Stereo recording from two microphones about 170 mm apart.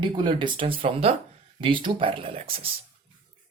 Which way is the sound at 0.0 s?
30° right (ahead or behind).